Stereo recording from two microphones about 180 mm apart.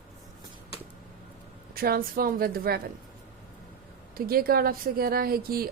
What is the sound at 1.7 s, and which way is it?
A woman's voice, 55° right (ahead or behind).